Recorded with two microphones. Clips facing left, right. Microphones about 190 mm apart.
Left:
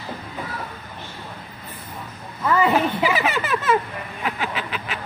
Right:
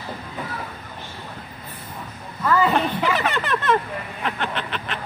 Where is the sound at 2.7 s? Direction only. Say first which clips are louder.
Left 1 dB; 5° left (ahead or behind).